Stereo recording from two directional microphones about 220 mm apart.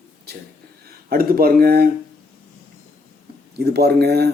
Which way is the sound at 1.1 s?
40° right (ahead or behind).